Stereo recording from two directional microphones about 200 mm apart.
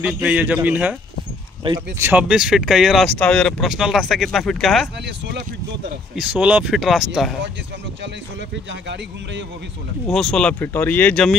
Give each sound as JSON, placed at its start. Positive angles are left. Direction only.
{"t": 0.0, "sound": "a man's voice", "side_deg": -5}
{"t": 1.6, "sound": "speech", "side_deg": -25}
{"t": 2.0, "sound": "speech", "side_deg": -10}
{"t": 5.0, "sound": "speech", "side_deg": -55}
{"t": 6.1, "sound": "speech", "side_deg": -5}
{"t": 8.8, "sound": "speech", "side_deg": -60}
{"t": 10.0, "sound": "speech", "side_deg": 0}